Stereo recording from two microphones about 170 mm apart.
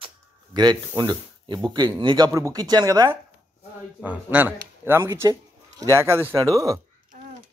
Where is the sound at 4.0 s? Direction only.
10° right (ahead or behind).